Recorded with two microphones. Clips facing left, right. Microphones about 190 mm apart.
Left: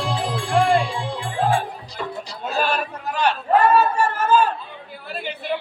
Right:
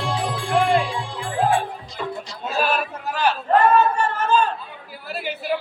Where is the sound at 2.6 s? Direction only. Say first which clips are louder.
Right 1 dB; 5° right (ahead or behind).